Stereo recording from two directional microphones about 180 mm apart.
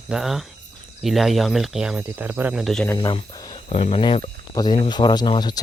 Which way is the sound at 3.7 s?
35° left (ahead or behind).